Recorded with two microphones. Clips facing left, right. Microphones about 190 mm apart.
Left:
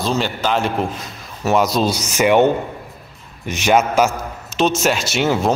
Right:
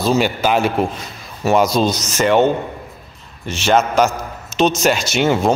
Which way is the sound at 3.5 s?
15° left (ahead or behind).